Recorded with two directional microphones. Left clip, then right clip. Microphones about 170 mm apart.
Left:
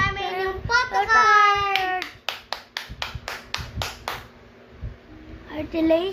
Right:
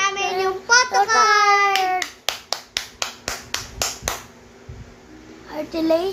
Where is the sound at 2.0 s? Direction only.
20° right (ahead or behind).